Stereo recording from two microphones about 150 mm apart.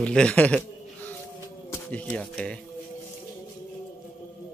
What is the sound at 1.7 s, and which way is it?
Speech, 15° left (ahead or behind).